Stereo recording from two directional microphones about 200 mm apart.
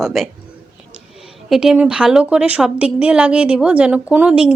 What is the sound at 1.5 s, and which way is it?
A woman's voice, 5° right (ahead or behind).